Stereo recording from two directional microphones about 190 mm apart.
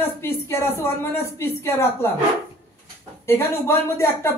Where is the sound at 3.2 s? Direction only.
15° left (ahead or behind).